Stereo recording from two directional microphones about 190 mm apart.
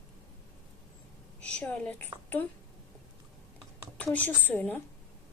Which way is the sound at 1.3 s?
5° left (ahead or behind).